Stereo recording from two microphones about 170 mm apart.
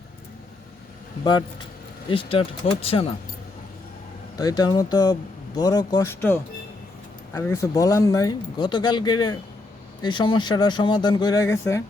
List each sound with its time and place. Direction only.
1.2 s speech: 25° left (ahead or behind)
4.4 s speech: 20° left (ahead or behind)